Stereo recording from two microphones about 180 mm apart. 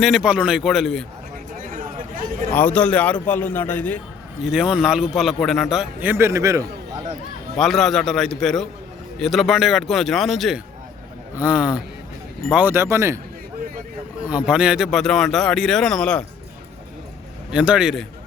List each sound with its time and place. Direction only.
0.0 s a man's voice: 5° right (ahead or behind)
1.5 s a sound: 45° right (ahead or behind)
2.5 s a man's voice: 10° left (ahead or behind)
4.4 s a man's voice: 5° right (ahead or behind)
7.5 s a man's voice: centre (ahead or behind); by 13.1 s 15° right (ahead or behind)
14.3 s a man's voice: 5° right (ahead or behind)
17.5 s a man's voice: 5° right (ahead or behind)